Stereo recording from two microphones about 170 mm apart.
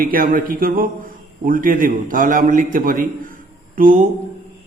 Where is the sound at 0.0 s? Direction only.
55° right (ahead or behind).